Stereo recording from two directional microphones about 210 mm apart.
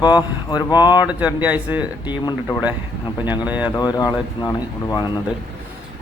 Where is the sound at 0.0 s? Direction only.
20° left (ahead or behind).